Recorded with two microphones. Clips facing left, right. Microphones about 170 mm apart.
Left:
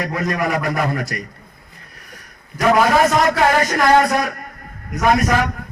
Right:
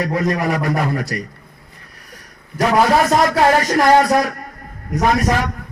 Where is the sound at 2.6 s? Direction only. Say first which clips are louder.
Even; 35° right (ahead or behind).